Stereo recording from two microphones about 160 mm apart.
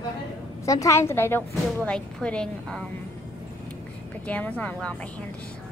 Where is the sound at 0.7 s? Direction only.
20° left (ahead or behind).